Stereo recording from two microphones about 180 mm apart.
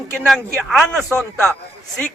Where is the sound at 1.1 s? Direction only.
15° right (ahead or behind).